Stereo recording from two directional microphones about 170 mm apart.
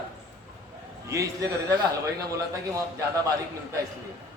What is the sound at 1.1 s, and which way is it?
Speech, 20° right (ahead or behind).